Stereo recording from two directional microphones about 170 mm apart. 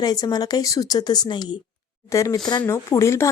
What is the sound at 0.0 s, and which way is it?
A woman's voice, 25° left (ahead or behind).